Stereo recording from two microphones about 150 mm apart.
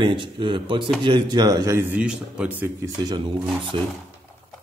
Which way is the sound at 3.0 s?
30° right (ahead or behind).